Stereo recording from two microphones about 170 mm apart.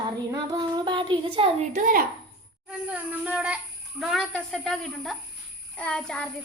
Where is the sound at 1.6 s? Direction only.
50° right (ahead or behind).